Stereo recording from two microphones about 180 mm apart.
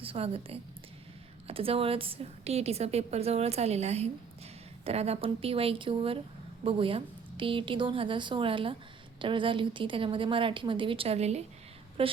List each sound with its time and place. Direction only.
0.0 s a woman's voice: 30° right (ahead or behind)